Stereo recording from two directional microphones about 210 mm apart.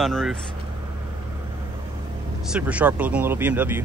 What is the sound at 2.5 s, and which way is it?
Speech, 5° right (ahead or behind).